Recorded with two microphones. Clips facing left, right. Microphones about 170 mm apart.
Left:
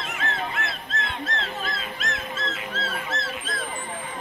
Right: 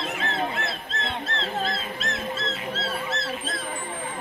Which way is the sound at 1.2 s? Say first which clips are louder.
Right 2 dB; 30° right (ahead or behind).